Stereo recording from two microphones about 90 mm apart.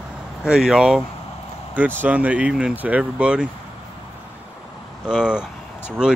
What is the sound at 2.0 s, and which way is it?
Speech, 15° right (ahead or behind).